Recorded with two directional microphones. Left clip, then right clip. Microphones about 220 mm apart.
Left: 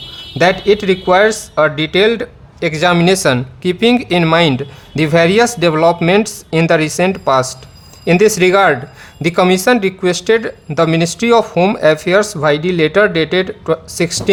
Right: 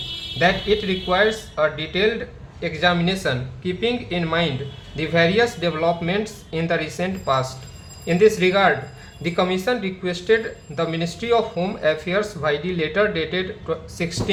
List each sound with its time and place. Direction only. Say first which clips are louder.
0.3 s speech: left 8 dB; 55° left (ahead or behind)